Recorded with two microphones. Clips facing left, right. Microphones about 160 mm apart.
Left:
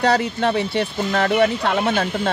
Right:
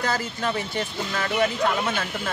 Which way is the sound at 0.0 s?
65° left (ahead or behind).